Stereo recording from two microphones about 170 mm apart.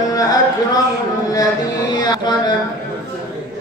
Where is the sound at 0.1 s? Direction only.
20° left (ahead or behind).